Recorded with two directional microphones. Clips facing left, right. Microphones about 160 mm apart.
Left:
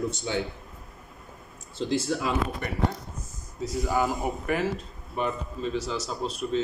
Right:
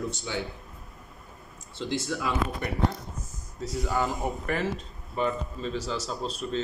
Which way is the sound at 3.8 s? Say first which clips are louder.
Left 2 dB; 10° left (ahead or behind).